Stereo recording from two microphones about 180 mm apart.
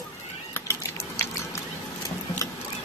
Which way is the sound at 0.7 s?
15° left (ahead or behind).